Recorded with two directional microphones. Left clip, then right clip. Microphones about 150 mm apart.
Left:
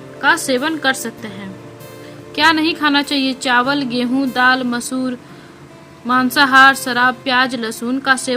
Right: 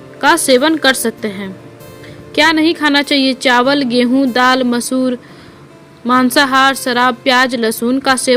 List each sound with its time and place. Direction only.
0.2 s a woman's voice: 40° right (ahead or behind)